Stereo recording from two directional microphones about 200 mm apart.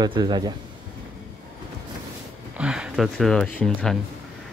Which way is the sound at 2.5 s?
5° right (ahead or behind).